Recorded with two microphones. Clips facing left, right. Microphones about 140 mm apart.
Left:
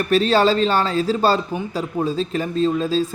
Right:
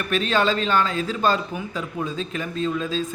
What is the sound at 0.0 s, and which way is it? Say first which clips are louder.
Speech: left 6 dB; 35° left (ahead or behind).